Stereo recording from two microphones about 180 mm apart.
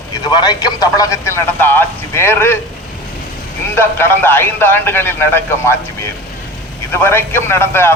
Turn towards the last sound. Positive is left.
turn(degrees=15)  # may be behind; listen again after turning